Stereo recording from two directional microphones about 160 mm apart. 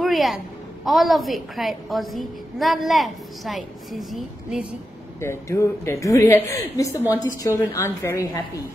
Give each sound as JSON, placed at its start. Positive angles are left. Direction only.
{"t": 0.0, "sound": "a sound", "side_deg": 0}
{"t": 0.8, "sound": "a woman's voice", "side_deg": 0}
{"t": 5.2, "sound": "a woman's voice", "side_deg": 15}